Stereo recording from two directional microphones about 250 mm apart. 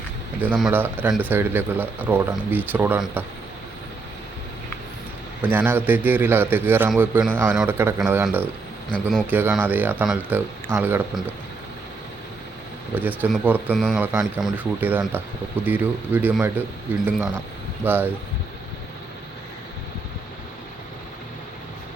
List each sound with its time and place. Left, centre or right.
0.3 s a man's voice: centre
5.4 s a man's voice: centre
12.9 s a man's voice: centre